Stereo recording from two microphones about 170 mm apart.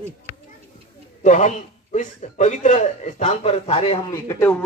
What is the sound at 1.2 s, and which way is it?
A man's voice, 45° left (ahead or behind).